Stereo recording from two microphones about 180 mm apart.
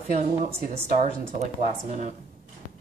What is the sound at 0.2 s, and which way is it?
Speech, 40° right (ahead or behind).